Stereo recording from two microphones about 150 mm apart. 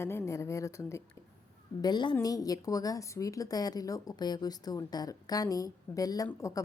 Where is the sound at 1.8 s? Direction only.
30° left (ahead or behind).